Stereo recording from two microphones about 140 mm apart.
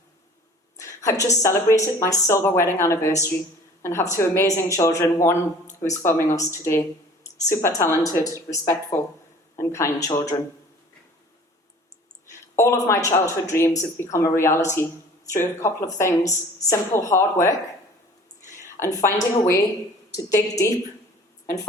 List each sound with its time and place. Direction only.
0.8 s a sound: 20° left (ahead or behind)
1.4 s speech: 20° left (ahead or behind)
12.3 s speech: 20° left (ahead or behind)
18.8 s speech: 20° left (ahead or behind)